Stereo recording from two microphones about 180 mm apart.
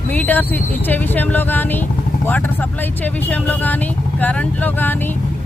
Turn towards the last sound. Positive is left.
turn(degrees=10)  # may be behind; listen again after turning